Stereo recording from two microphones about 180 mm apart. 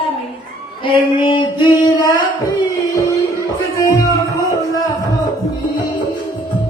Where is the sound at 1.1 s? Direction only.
25° left (ahead or behind).